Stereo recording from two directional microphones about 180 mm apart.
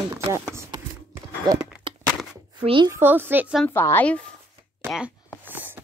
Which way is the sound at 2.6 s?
25° right (ahead or behind).